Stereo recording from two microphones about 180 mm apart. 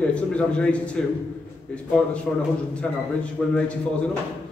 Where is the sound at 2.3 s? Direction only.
5° left (ahead or behind).